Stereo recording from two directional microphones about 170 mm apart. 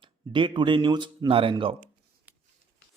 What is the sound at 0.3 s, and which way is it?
Speech, 30° right (ahead or behind).